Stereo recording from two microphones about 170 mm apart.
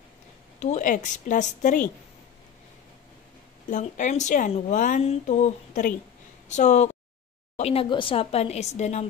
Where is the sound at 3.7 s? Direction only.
45° left (ahead or behind).